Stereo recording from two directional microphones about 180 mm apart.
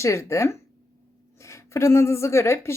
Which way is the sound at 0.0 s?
15° left (ahead or behind).